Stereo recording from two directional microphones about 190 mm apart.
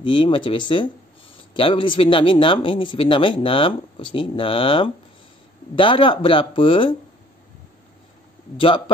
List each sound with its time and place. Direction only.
0.0 s speech: 25° left (ahead or behind)
8.5 s speech: 25° left (ahead or behind)